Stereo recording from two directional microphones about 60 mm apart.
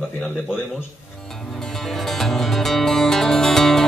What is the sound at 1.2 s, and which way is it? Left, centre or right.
Music, centre.